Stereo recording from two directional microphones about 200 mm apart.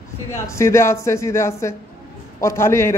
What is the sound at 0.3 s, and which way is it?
A man's voice, 15° left (ahead or behind).